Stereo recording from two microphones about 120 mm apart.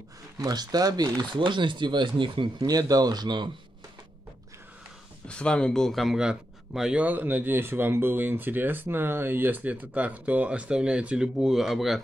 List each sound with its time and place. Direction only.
0.4 s speech: 35° right (ahead or behind)
5.3 s a man's voice: 10° left (ahead or behind)